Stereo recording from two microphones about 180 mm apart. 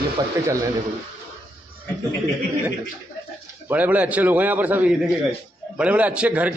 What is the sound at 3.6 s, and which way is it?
Speech, 10° right (ahead or behind).